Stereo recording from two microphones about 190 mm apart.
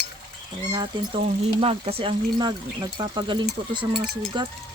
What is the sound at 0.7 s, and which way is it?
Speech, 20° right (ahead or behind).